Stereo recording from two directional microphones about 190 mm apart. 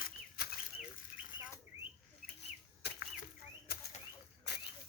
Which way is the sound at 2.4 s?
60° left (ahead or behind).